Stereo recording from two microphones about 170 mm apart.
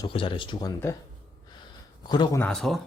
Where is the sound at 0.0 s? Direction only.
30° left (ahead or behind).